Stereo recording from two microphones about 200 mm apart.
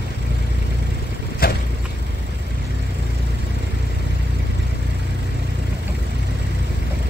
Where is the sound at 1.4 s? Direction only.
50° left (ahead or behind).